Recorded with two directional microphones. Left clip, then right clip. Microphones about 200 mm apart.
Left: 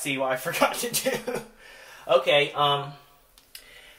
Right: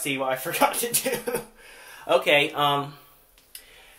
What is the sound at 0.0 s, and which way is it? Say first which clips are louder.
Speech: even; 15° right (ahead or behind).